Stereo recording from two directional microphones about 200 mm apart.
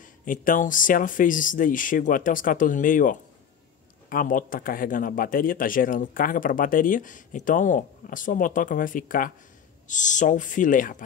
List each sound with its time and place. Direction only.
0.0 s speech: 40° left (ahead or behind)